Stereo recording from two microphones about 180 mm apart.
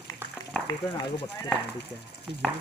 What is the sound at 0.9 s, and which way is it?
Speech, 20° left (ahead or behind).